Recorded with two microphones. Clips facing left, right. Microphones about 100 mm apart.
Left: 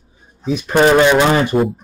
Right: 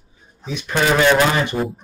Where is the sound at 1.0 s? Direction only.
20° left (ahead or behind).